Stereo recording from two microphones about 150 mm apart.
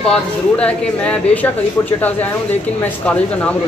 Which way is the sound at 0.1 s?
5° left (ahead or behind).